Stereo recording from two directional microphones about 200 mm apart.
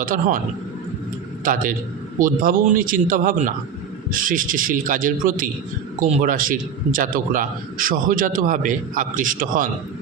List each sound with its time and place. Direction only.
0.0 s a man's voice: 45° right (ahead or behind)
2.1 s a man's voice: 45° right (ahead or behind)